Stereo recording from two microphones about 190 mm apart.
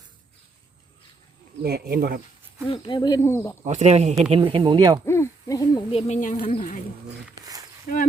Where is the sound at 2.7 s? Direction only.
25° left (ahead or behind).